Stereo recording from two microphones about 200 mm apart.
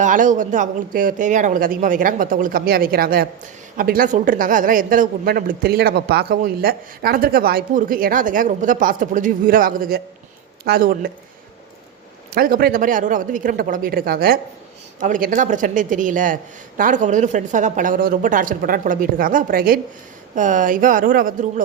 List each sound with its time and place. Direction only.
0.0 s a woman's voice: 40° right (ahead or behind)
12.3 s a woman's voice: 50° right (ahead or behind)